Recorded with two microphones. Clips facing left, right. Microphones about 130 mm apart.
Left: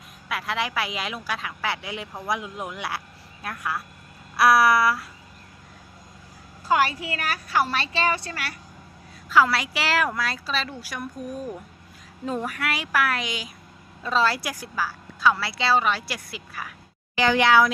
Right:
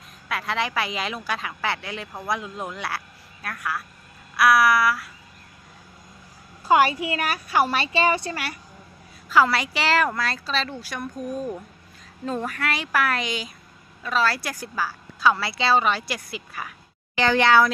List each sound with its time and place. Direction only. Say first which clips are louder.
0.3 s a woman's voice: right 1 dB; 5° left (ahead or behind)
3.4 s a sound: even; 20° left (ahead or behind)
6.7 s a woman's voice: right 4 dB; 20° right (ahead or behind)
9.3 s a woman's voice: right 1 dB; centre (ahead or behind)
12.2 s a woman's voice: right 1 dB; 10° left (ahead or behind)
14.0 s a sound: left 1 dB; 25° left (ahead or behind)
14.6 s a woman's voice: right 1 dB; centre (ahead or behind)